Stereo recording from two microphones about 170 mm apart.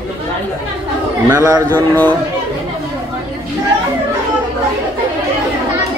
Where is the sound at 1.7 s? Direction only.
10° left (ahead or behind).